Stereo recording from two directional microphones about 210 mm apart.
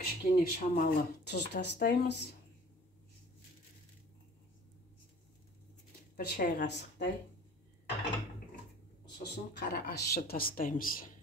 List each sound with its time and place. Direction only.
0.0 s speech: 45° left (ahead or behind)
6.1 s a woman's voice: 45° left (ahead or behind)
9.2 s speech: 50° left (ahead or behind)